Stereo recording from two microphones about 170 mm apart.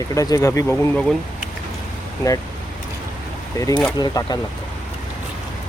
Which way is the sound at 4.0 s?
25° left (ahead or behind).